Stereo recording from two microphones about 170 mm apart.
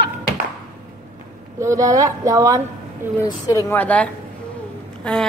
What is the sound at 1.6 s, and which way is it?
Speech, 20° right (ahead or behind).